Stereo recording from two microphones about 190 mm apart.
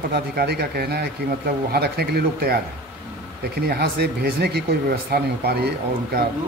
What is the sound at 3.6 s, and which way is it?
Speech, 55° right (ahead or behind).